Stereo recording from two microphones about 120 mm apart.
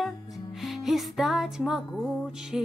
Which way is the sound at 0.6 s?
Centre (ahead or behind).